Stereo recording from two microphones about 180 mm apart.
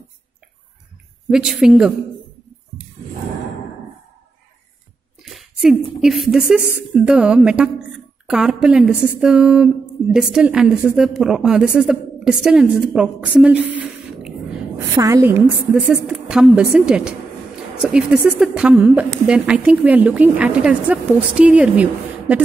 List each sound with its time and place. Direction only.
1.3 s a woman's voice: 5° right (ahead or behind)
5.2 s a woman's voice: centre (ahead or behind)
15.0 s a woman's voice: 20° right (ahead or behind)